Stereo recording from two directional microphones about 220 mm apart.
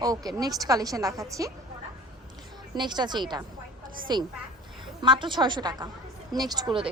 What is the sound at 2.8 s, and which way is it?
A woman's voice, 20° right (ahead or behind).